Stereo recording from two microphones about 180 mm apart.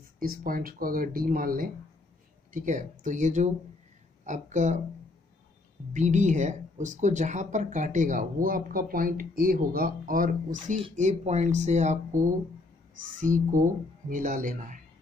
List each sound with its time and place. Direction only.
0.2 s speech: 55° right (ahead or behind)
5.9 s speech: 40° right (ahead or behind)
10.8 s speech: 40° right (ahead or behind)